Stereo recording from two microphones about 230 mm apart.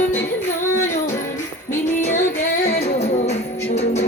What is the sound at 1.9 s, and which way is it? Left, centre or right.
Music, left.